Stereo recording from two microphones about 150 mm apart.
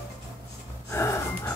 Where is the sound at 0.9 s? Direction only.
20° left (ahead or behind).